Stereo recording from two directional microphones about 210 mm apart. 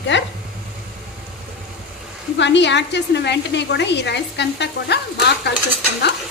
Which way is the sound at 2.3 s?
55° left (ahead or behind).